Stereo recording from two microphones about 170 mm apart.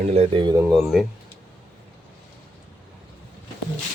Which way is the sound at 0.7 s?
Centre (ahead or behind).